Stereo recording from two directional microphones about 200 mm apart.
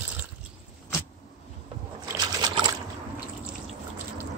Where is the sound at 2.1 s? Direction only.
20° right (ahead or behind).